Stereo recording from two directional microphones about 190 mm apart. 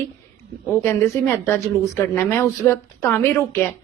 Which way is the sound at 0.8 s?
10° left (ahead or behind).